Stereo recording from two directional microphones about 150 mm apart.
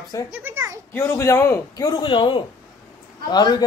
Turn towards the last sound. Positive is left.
turn(degrees=30)  # may be behind; listen again after turning